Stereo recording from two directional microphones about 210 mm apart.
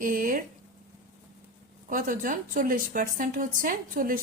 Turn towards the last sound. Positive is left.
turn(degrees=-40)  # may be behind; listen again after turning